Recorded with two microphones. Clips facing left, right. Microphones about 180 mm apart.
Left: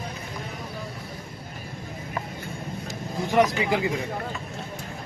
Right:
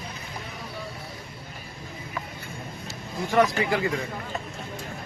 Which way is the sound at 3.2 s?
15° left (ahead or behind).